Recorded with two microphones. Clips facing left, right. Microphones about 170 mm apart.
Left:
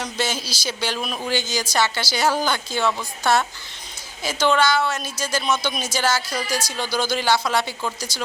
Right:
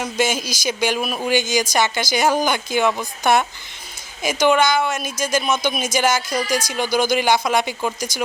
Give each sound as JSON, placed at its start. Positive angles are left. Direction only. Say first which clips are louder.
{"t": 0.0, "sound": "speech", "louder": "right 5 dB", "side_deg": -10}